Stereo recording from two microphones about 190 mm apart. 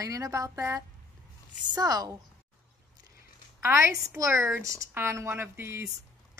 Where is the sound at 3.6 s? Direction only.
15° right (ahead or behind).